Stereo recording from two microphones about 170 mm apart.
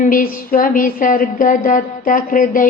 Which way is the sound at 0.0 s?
55° left (ahead or behind).